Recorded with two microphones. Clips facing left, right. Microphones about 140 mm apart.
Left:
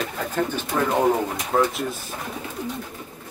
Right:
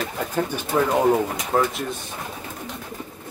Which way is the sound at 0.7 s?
15° right (ahead or behind).